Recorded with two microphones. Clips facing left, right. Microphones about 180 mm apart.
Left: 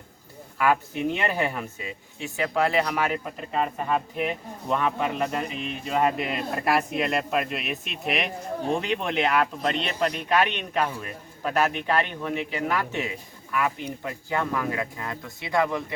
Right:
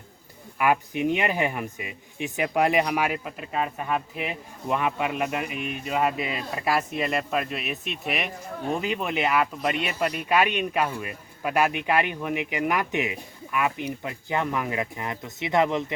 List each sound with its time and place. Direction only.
0.6 s speech: 15° right (ahead or behind)